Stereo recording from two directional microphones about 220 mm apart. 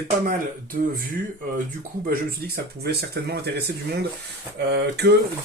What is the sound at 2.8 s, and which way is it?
Speech, 45° right (ahead or behind).